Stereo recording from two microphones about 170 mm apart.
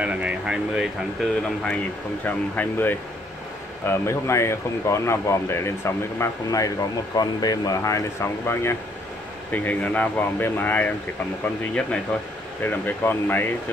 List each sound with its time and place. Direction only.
0.0 s speech: 5° right (ahead or behind)
2.2 s speech: 10° left (ahead or behind)
12.1 s speech: 5° left (ahead or behind)